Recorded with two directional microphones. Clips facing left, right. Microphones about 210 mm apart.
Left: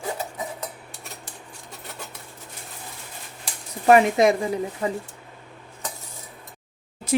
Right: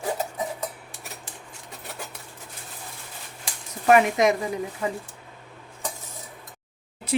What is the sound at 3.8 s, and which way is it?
Speech, 30° left (ahead or behind).